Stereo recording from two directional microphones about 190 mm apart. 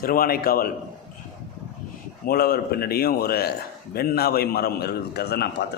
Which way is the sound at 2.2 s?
55° left (ahead or behind).